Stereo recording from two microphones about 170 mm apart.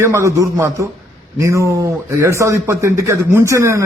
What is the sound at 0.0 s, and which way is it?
Speech, 15° right (ahead or behind).